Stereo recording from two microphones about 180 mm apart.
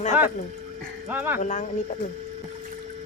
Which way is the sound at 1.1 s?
10° right (ahead or behind).